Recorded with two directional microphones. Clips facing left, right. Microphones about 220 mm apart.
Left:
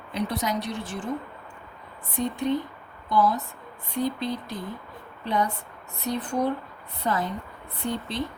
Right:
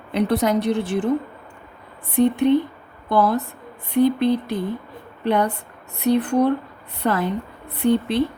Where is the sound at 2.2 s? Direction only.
60° right (ahead or behind).